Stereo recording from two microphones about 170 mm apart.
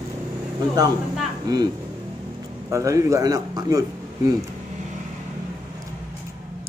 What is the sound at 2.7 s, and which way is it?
A man's voice, 20° right (ahead or behind).